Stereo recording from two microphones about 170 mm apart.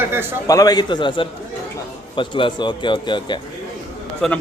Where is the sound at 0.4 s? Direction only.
20° left (ahead or behind).